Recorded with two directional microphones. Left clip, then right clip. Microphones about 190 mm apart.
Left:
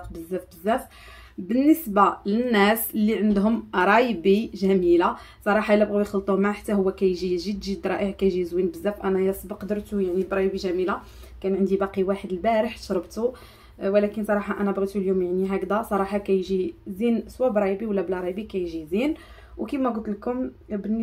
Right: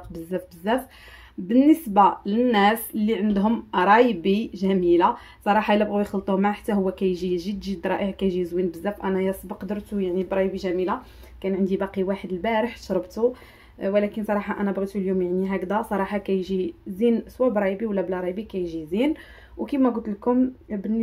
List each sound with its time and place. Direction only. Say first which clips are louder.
0.1 s speech: right 2 dB; 20° right (ahead or behind)